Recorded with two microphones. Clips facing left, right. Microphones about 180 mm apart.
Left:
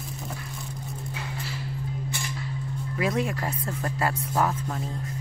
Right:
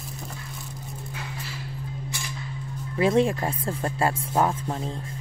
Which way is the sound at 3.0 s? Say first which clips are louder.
Right 6 dB; 30° right (ahead or behind).